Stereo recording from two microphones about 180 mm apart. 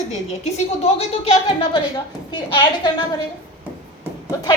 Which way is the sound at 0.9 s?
35° left (ahead or behind).